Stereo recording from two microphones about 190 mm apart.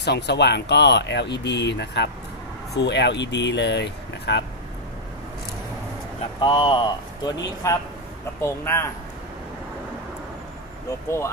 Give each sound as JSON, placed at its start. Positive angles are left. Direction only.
{"t": 0.0, "sound": "speech", "side_deg": 60}
{"t": 6.4, "sound": "a man's voice", "side_deg": 25}